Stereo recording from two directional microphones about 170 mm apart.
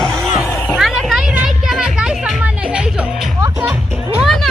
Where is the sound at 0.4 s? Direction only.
20° left (ahead or behind).